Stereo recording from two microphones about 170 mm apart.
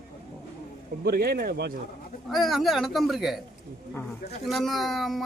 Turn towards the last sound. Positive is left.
turn(degrees=0)  # may be behind; listen again after turning